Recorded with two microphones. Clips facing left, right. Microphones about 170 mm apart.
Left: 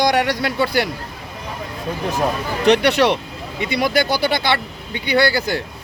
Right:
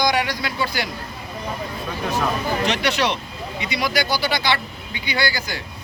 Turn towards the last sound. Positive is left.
turn(degrees=60)  # may be behind; listen again after turning